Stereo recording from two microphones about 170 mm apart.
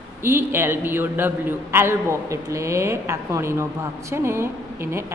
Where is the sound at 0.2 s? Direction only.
15° right (ahead or behind).